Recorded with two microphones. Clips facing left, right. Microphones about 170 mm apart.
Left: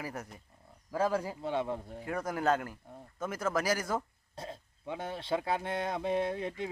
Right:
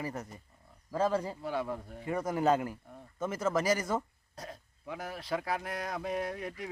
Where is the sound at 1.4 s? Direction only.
25° left (ahead or behind).